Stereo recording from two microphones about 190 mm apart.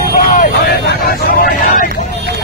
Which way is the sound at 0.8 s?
50° left (ahead or behind).